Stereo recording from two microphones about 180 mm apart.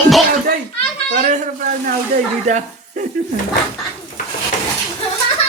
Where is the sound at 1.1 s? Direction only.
50° right (ahead or behind).